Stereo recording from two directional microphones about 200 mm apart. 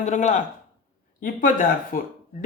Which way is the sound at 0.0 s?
35° left (ahead or behind).